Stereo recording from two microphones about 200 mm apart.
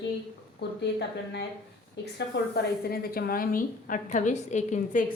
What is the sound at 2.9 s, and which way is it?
A woman's voice, 50° left (ahead or behind).